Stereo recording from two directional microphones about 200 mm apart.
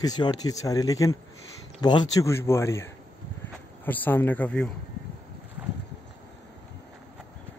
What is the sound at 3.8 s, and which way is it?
Speech, 10° left (ahead or behind).